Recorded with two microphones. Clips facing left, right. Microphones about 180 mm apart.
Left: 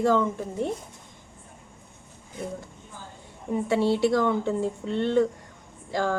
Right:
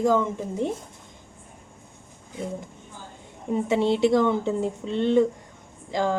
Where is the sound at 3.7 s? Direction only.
20° right (ahead or behind).